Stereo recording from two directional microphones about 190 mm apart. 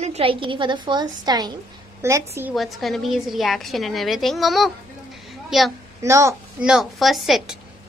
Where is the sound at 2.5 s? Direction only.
Centre (ahead or behind).